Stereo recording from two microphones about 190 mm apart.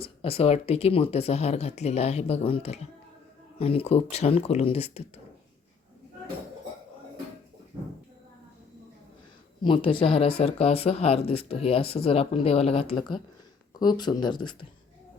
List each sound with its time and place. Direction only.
0.0 s speech: 30° left (ahead or behind)
9.6 s speech: 30° left (ahead or behind)